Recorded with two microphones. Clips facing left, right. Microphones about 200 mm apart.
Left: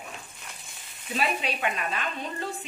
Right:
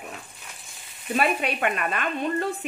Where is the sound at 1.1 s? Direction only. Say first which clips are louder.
Right 5 dB; 55° right (ahead or behind).